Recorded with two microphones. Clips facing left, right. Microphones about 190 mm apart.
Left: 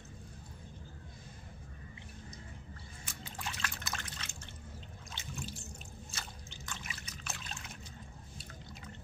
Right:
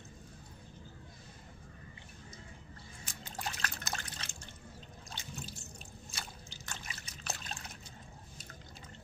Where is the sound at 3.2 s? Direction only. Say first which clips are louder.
Right 2 dB; 40° right (ahead or behind).